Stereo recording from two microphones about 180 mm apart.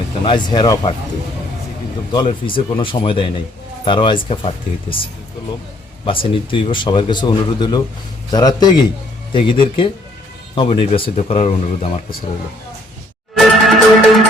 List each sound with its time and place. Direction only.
0.3 s speech: 25° left (ahead or behind)
2.1 s speech: 25° left (ahead or behind)
6.1 s speech: 30° left (ahead or behind)
13.3 s music: centre (ahead or behind)